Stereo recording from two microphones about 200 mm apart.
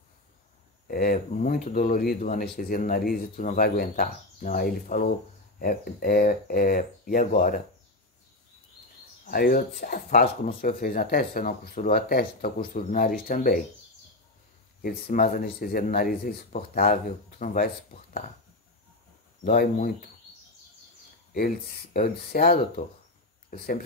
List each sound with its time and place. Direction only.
0.8 s speech: 45° left (ahead or behind)
9.2 s speech: 45° left (ahead or behind)
14.8 s speech: 45° left (ahead or behind)
19.4 s speech: 45° left (ahead or behind)
21.9 s speech: 45° left (ahead or behind)